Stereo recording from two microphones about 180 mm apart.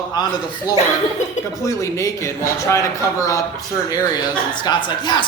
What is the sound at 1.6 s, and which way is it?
A man's voice, 15° left (ahead or behind).